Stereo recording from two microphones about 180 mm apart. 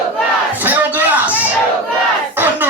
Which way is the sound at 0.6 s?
10° right (ahead or behind).